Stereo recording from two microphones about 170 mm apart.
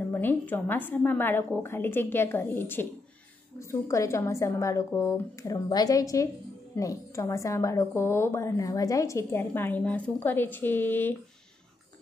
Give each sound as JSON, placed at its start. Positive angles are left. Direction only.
{"t": 0.1, "sound": "a woman's voice", "side_deg": 10}